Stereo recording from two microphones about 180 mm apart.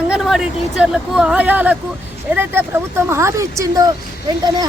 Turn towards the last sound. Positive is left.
turn(degrees=-20)  # may be behind; listen again after turning